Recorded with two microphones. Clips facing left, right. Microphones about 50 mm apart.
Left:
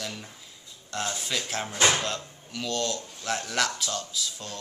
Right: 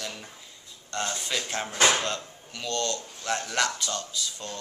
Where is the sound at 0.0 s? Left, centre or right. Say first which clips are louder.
Left 1 dB; centre.